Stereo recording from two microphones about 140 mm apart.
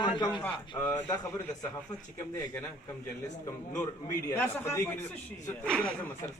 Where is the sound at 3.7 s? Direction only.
20° left (ahead or behind).